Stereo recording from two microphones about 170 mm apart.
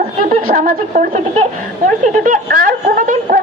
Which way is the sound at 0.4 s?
50° right (ahead or behind).